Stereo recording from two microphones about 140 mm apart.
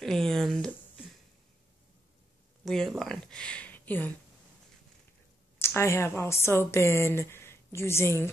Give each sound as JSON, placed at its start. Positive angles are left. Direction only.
{"t": 0.0, "sound": "speech", "side_deg": 5}
{"t": 2.6, "sound": "speech", "side_deg": 0}
{"t": 5.6, "sound": "a woman's voice", "side_deg": 20}